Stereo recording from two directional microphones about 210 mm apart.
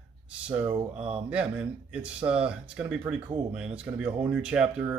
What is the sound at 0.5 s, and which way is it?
Speech, 25° right (ahead or behind).